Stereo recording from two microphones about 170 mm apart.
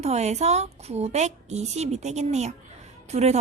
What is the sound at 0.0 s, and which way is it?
A woman's voice, 40° right (ahead or behind).